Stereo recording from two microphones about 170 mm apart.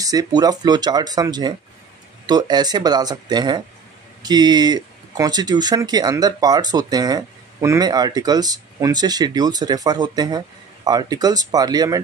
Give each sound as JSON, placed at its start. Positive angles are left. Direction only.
{"t": 0.0, "sound": "speech", "side_deg": -20}